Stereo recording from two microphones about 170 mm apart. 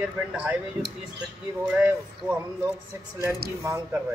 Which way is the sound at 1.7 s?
10° right (ahead or behind).